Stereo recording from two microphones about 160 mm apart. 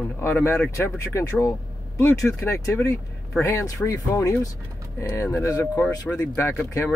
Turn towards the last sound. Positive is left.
turn(degrees=15)  # may be behind; listen again after turning